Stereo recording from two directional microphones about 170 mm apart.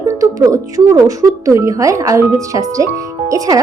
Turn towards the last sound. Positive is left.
turn(degrees=-20)  # may be behind; listen again after turning